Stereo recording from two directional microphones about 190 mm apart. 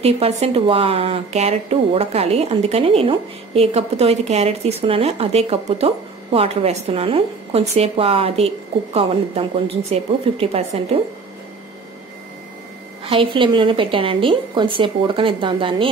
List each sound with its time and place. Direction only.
0.0 s speech: 30° right (ahead or behind)
13.0 s a woman's voice: 30° right (ahead or behind)